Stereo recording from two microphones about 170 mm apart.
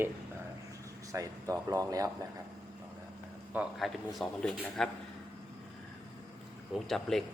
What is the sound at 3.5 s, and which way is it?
Speech, centre (ahead or behind).